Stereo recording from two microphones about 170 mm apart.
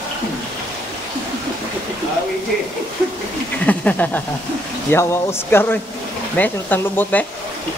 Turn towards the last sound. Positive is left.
turn(degrees=10)  # may be behind; listen again after turning